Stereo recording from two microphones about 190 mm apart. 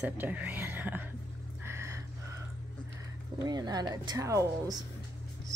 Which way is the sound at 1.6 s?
15° right (ahead or behind).